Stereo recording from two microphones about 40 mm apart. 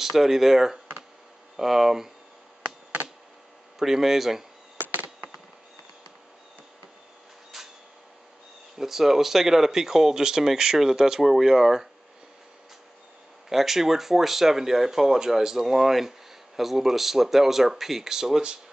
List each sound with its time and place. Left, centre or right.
0.0 s speech: centre
3.8 s speech: centre
4.8 s insect: right
7.5 s vehicle: centre
8.7 s speech: centre
13.5 s speech: centre